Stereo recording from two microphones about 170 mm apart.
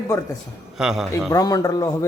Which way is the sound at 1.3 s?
20° left (ahead or behind).